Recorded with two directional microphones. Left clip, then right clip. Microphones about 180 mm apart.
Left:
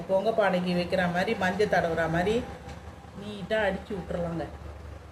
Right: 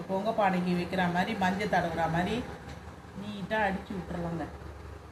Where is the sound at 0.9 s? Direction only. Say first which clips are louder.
Left 2 dB; 75° left (ahead or behind).